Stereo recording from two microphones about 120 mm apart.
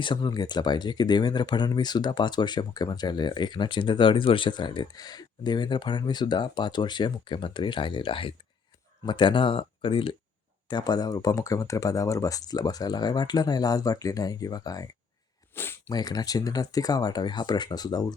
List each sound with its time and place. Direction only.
0.0 s speech: 40° left (ahead or behind)
15.5 s sniff: 15° left (ahead or behind)
15.9 s speech: 35° left (ahead or behind)